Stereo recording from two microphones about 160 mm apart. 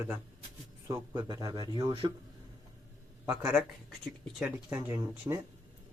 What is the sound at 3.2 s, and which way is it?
Speech, 10° right (ahead or behind).